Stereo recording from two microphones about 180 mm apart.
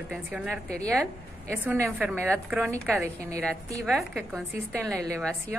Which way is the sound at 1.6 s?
10° right (ahead or behind).